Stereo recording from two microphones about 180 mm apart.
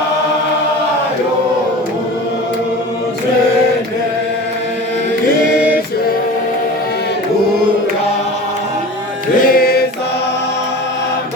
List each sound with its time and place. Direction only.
9.4 s music: 55° left (ahead or behind)